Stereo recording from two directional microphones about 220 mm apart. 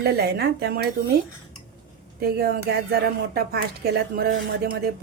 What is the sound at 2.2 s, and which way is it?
A woman's voice, 45° right (ahead or behind).